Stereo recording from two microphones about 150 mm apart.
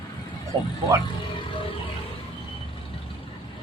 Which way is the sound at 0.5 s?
30° right (ahead or behind).